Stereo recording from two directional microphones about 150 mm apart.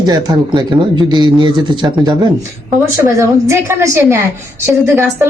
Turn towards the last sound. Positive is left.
turn(degrees=-15)  # may be behind; listen again after turning